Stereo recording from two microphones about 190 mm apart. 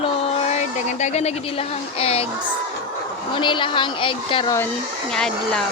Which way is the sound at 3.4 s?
25° left (ahead or behind).